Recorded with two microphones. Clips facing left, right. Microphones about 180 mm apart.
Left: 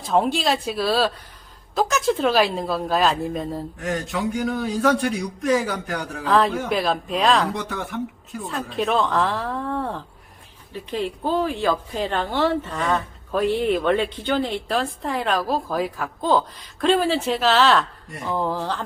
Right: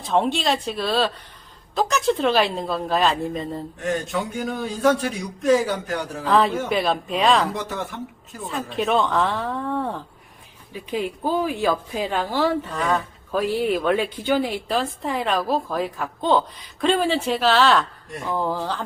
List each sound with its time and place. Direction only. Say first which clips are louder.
0.0 s a woman's voice: left 1 dB; centre (ahead or behind)
4.4 s speech: right 1 dB; 25° right (ahead or behind)
5.0 s a woman's voice: right 1 dB; centre (ahead or behind)